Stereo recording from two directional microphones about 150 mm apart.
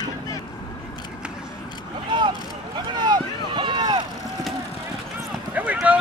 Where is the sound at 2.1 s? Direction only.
30° right (ahead or behind).